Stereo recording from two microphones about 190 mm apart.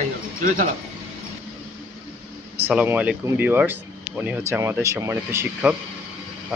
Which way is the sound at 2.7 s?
10° right (ahead or behind).